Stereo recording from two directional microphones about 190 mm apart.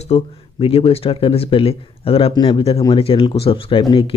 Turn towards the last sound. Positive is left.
turn(degrees=25)  # may be behind; listen again after turning